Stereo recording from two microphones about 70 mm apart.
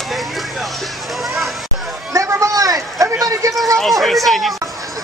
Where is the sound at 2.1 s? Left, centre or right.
Right.